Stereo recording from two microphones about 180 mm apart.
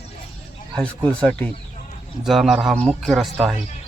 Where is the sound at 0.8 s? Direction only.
5° left (ahead or behind).